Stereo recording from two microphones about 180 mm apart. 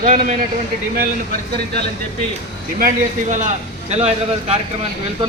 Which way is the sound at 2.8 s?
45° right (ahead or behind).